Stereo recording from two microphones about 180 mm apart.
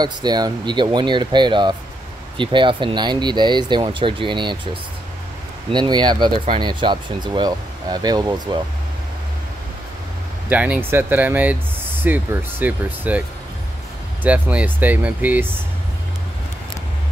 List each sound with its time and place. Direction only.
0.0 s speech: 25° right (ahead or behind)
5.7 s speech: 25° right (ahead or behind)
10.5 s speech: 10° right (ahead or behind)
14.2 s speech: 10° right (ahead or behind)